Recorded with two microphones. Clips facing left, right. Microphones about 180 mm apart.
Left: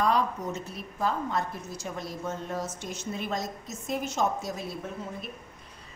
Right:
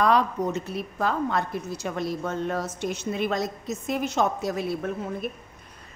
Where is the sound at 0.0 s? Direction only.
70° right (ahead or behind).